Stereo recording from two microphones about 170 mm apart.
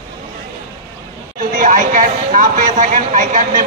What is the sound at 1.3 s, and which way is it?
A man's voice, 50° right (ahead or behind).